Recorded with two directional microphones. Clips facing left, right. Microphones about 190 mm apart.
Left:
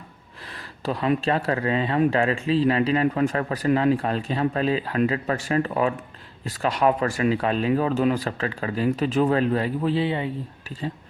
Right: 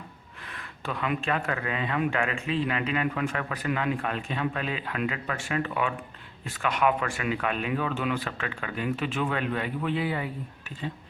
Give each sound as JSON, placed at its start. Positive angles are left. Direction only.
{"t": 0.5, "sound": "speech", "side_deg": 35}